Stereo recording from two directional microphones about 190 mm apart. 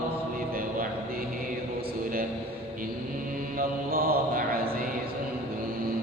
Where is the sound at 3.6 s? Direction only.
50° right (ahead or behind).